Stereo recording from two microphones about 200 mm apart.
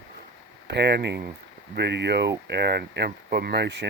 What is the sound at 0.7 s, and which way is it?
Speech, 55° right (ahead or behind).